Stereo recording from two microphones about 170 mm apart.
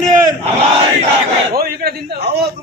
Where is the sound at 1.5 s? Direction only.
65° right (ahead or behind).